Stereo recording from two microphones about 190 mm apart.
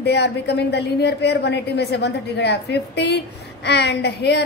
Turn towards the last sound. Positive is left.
turn(degrees=60)  # may be behind; listen again after turning